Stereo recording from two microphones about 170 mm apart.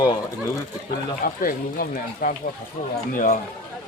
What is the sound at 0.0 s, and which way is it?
Speech, 25° left (ahead or behind).